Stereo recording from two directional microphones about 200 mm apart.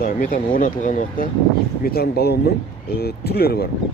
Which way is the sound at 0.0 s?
45° left (ahead or behind).